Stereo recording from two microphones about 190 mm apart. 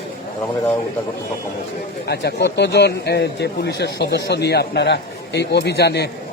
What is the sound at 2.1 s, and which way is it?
Speech, 60° left (ahead or behind).